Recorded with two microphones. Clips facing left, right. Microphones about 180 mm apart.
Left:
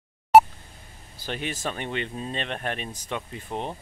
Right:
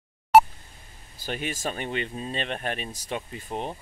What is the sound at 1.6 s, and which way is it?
Speech, 40° right (ahead or behind).